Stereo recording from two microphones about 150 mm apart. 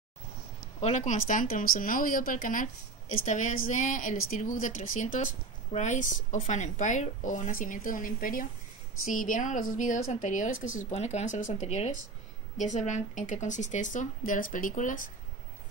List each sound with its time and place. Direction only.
0.7 s speech: 50° left (ahead or behind)